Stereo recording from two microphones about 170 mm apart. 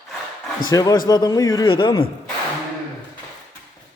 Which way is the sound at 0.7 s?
20° left (ahead or behind).